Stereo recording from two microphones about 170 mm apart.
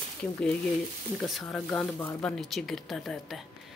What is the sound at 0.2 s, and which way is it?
Speech, 5° left (ahead or behind).